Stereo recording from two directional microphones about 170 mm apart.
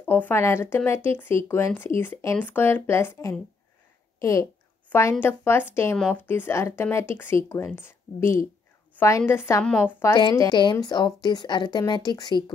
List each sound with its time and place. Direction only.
0.0 s speech: 10° left (ahead or behind)
4.2 s a sound: 20° left (ahead or behind)
5.2 s speech: 15° left (ahead or behind)
10.3 s a woman's voice: 25° left (ahead or behind)